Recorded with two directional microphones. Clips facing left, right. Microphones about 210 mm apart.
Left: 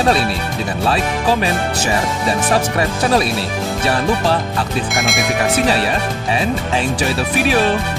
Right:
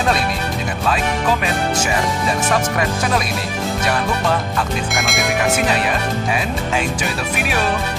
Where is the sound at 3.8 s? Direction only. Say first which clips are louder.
Left 4 dB; 30° left (ahead or behind).